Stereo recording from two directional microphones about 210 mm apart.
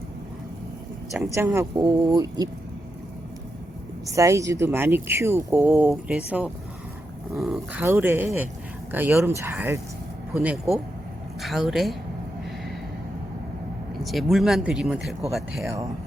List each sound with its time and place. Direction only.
1.1 s speech: 10° right (ahead or behind)
4.0 s speech: 15° right (ahead or behind)
14.0 s speech: centre (ahead or behind)